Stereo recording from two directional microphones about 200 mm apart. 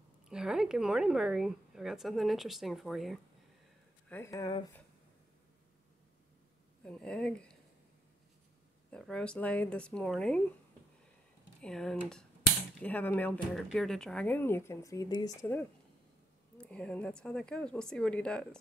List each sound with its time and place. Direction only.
0.3 s a woman's voice: 5° right (ahead or behind)
4.1 s speech: 15° left (ahead or behind)
6.8 s a woman's voice: 5° left (ahead or behind)
8.9 s a woman's voice: 5° left (ahead or behind)
11.6 s a woman's voice: 5° left (ahead or behind); by 15.3 s 20° left (ahead or behind)
16.5 s a woman's voice: 5° left (ahead or behind)